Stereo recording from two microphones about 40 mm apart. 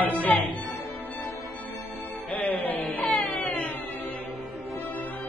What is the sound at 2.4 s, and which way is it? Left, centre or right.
Music, left.